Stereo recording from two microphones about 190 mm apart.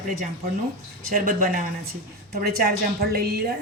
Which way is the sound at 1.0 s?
50° right (ahead or behind).